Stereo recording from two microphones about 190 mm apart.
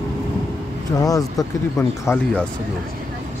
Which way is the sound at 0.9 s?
20° left (ahead or behind).